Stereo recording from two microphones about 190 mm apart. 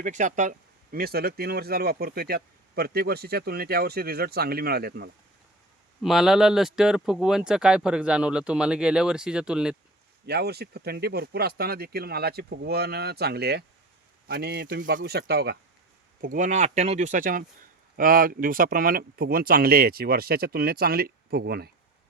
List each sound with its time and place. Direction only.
0.0 s speech: 40° right (ahead or behind); by 5.1 s 60° right (ahead or behind)
6.0 s speech: centre (ahead or behind)
10.2 s speech: 55° right (ahead or behind)
16.2 s speech: 45° right (ahead or behind)